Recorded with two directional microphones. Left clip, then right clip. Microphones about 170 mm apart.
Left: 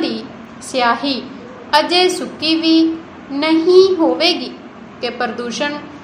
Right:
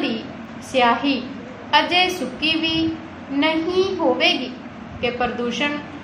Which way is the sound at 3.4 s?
25° left (ahead or behind).